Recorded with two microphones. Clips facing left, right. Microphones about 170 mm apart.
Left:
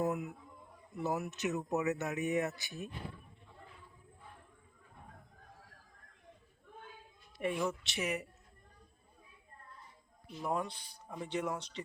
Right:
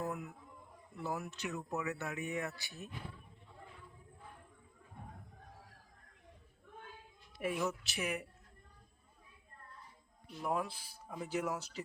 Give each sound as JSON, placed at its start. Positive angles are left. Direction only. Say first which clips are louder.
{"t": 0.0, "sound": "a sound", "louder": "left 6 dB", "side_deg": 20}
{"t": 0.9, "sound": "speech", "louder": "left 5 dB", "side_deg": 20}
{"t": 7.3, "sound": "speech", "louder": "left 2 dB", "side_deg": -5}
{"t": 10.2, "sound": "speech", "louder": "left 1 dB", "side_deg": 0}